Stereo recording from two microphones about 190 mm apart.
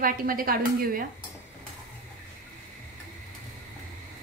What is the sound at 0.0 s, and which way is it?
Speech, 50° right (ahead or behind).